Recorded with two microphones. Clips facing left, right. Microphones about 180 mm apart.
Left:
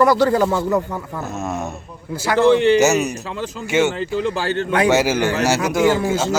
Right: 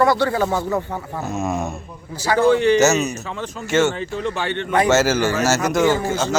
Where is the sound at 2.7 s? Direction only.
10° left (ahead or behind).